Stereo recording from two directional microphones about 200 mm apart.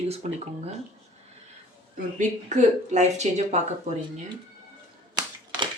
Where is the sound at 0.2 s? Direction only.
30° right (ahead or behind).